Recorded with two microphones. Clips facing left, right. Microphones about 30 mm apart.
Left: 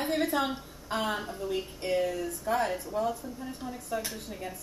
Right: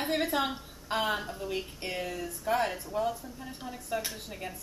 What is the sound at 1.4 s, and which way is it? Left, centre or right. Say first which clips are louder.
Speech: left 3 dB; centre.